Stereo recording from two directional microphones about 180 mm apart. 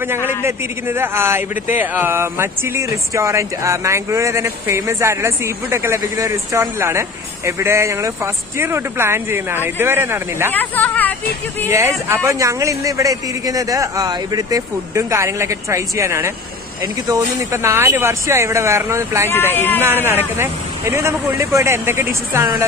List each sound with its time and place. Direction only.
0.3 s a man's voice: 15° right (ahead or behind)
10.5 s speech: 10° left (ahead or behind)
12.1 s a man's voice: 15° right (ahead or behind)
19.3 s speech: 10° left (ahead or behind)
19.8 s a man's voice: 15° right (ahead or behind)